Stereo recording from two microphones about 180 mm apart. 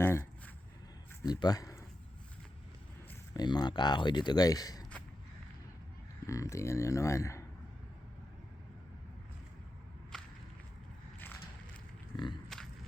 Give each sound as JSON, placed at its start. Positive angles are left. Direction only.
{"t": 0.0, "sound": "a sound", "side_deg": 15}
{"t": 1.2, "sound": "speech", "side_deg": 20}
{"t": 3.3, "sound": "speech", "side_deg": 25}
{"t": 6.2, "sound": "speech", "side_deg": 15}
{"t": 10.1, "sound": "whip", "side_deg": 5}
{"t": 12.1, "sound": "speech", "side_deg": 25}